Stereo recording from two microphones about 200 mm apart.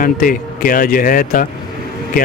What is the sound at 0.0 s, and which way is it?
Speech, 45° left (ahead or behind).